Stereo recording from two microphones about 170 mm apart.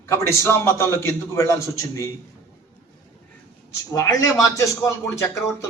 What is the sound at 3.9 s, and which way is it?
A man's voice, 20° left (ahead or behind).